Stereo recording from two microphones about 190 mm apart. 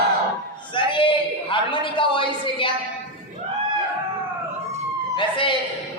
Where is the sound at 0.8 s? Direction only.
25° left (ahead or behind).